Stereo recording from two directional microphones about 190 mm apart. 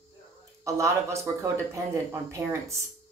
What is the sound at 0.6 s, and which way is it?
Speech, 15° right (ahead or behind).